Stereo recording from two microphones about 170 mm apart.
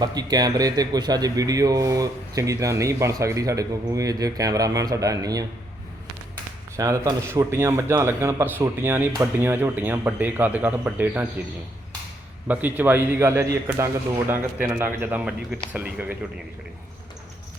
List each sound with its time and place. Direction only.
0.0 s speech: 25° right (ahead or behind)
6.7 s a man's voice: 20° right (ahead or behind)
12.5 s a man's voice: 10° right (ahead or behind)